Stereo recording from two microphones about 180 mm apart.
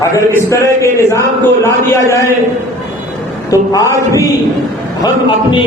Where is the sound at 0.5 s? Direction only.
15° left (ahead or behind).